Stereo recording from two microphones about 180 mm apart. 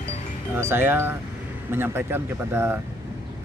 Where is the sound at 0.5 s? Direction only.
10° right (ahead or behind).